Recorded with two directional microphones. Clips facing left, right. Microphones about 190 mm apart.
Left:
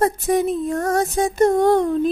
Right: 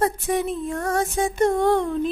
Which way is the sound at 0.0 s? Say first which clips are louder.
Left 4 dB; 40° left (ahead or behind).